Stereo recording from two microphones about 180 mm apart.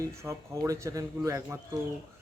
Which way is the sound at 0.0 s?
15° right (ahead or behind).